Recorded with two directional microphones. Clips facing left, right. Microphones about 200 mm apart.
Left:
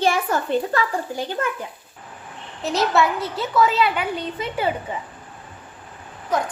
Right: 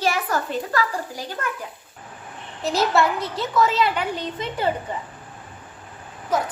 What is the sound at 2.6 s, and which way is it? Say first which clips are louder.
A woman's voice: even; centre (ahead or behind).